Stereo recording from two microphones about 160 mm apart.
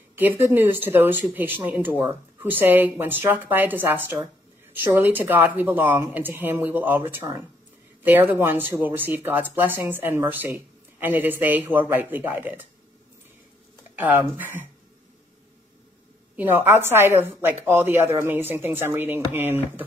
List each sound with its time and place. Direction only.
0.2 s speech: 10° right (ahead or behind)
8.0 s speech: 10° right (ahead or behind)
13.9 s speech: 10° right (ahead or behind)
16.3 s speech: 15° right (ahead or behind)